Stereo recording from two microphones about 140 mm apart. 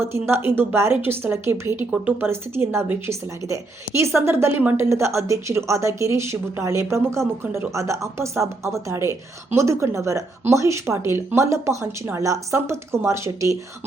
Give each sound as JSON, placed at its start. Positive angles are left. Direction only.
{"t": 0.0, "sound": "a woman's voice", "side_deg": -15}